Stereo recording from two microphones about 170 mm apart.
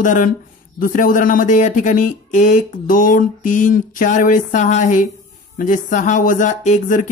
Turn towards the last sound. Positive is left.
turn(degrees=45)  # may be behind; listen again after turning